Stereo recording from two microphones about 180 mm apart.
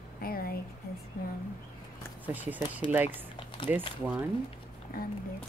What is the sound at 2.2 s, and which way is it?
Speech, 10° right (ahead or behind).